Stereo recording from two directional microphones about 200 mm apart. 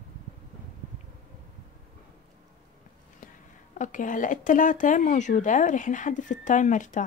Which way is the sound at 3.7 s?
40° left (ahead or behind).